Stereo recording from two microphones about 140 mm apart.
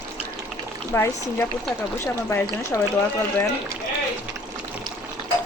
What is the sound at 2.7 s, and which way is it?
Speech, 20° left (ahead or behind).